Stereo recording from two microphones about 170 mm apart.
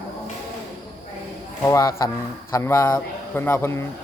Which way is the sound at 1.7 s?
20° left (ahead or behind).